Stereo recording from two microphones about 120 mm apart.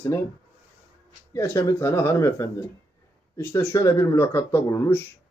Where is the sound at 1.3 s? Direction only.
25° left (ahead or behind).